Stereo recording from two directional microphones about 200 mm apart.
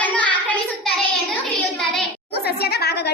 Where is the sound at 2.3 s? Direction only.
55° left (ahead or behind).